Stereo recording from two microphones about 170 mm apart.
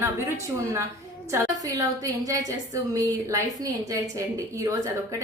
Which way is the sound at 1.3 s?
20° right (ahead or behind).